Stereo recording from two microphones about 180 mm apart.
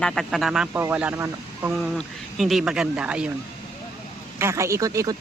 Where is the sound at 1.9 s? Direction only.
Centre (ahead or behind).